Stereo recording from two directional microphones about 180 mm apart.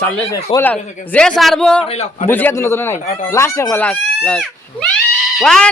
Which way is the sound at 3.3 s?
15° left (ahead or behind).